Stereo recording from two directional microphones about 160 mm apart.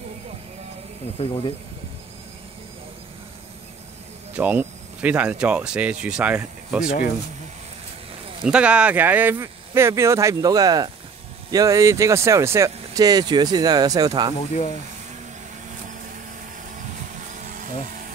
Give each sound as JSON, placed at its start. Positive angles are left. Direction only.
{"t": 1.2, "sound": "speech", "side_deg": 35}
{"t": 4.3, "sound": "speech", "side_deg": -10}
{"t": 8.5, "sound": "speech", "side_deg": -5}
{"t": 17.5, "sound": "vehicle", "side_deg": -55}
{"t": 17.8, "sound": "a sound", "side_deg": -60}